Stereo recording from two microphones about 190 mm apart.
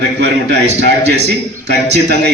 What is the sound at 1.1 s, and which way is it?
Speech, 60° right (ahead or behind).